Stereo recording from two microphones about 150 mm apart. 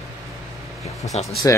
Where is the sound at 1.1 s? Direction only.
45° left (ahead or behind).